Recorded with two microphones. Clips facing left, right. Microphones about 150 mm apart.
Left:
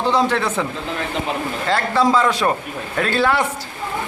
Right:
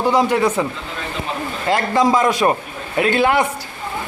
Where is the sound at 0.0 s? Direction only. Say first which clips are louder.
Right 3 dB; 10° right (ahead or behind).